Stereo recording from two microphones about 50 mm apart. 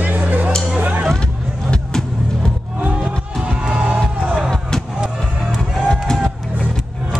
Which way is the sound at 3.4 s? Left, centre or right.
Right.